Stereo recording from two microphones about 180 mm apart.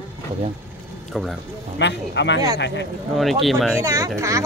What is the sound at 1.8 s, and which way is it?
Speech, 75° left (ahead or behind).